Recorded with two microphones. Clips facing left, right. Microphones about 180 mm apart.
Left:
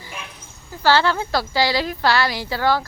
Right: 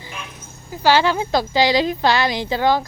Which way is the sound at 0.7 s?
15° right (ahead or behind).